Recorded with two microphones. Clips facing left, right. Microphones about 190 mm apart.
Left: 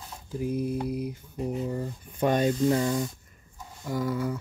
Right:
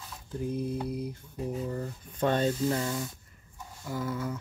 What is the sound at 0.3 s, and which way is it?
Speech, 10° left (ahead or behind).